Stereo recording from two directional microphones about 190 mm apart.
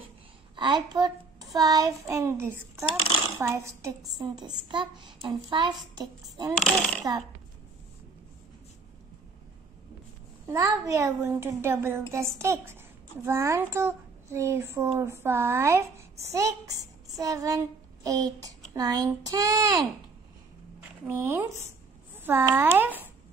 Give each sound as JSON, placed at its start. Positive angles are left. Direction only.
{"t": 0.6, "sound": "a child's voice", "side_deg": -25}
{"t": 6.5, "sound": "speech", "side_deg": 0}
{"t": 10.4, "sound": "a woman's voice", "side_deg": -15}
{"t": 21.1, "sound": "a woman's voice", "side_deg": -15}